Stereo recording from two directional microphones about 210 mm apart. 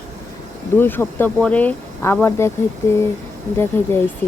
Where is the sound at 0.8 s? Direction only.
10° left (ahead or behind).